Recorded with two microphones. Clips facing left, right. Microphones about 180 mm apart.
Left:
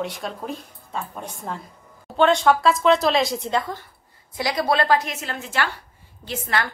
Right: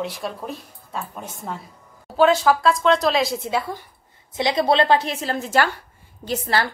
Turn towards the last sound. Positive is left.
turn(degrees=-35)  # may be behind; listen again after turning